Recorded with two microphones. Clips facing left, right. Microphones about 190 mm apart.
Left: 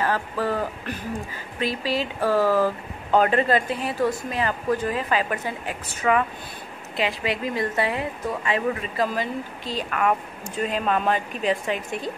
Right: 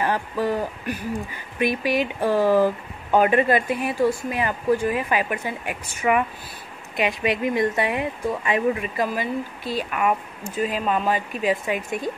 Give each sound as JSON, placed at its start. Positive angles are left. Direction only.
{"t": 0.0, "sound": "speech", "side_deg": -15}